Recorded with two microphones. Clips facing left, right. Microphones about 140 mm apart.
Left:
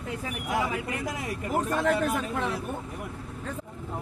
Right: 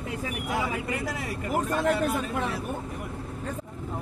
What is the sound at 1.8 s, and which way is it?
Speech, 10° right (ahead or behind).